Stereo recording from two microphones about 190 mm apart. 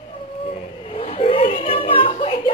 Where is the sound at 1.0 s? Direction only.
30° left (ahead or behind).